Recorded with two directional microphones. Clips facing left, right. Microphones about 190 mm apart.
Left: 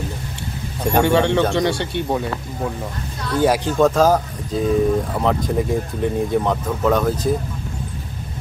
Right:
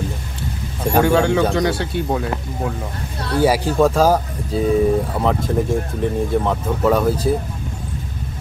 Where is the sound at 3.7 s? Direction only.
10° right (ahead or behind).